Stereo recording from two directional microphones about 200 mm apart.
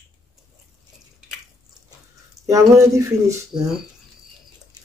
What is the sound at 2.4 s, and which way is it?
Speech, 15° right (ahead or behind).